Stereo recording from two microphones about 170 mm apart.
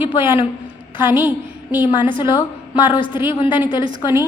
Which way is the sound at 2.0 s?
25° left (ahead or behind).